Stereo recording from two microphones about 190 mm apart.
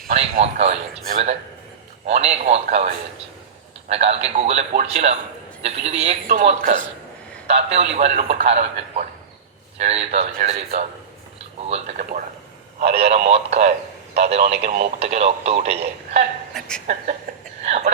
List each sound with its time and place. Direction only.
0.1 s a man's voice: 35° right (ahead or behind)
16.6 s speech: 5° left (ahead or behind)
16.8 s speech: 45° right (ahead or behind)